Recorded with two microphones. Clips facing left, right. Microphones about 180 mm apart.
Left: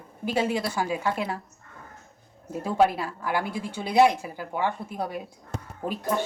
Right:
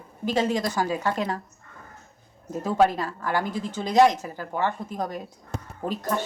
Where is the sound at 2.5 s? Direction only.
10° left (ahead or behind).